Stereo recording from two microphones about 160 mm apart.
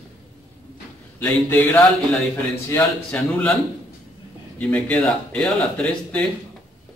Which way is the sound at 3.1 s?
5° left (ahead or behind).